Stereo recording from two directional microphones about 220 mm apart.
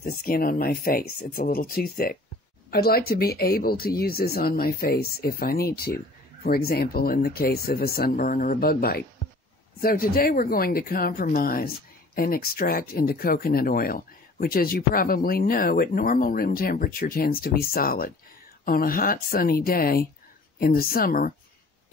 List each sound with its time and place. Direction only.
0.0 s speech: 40° left (ahead or behind)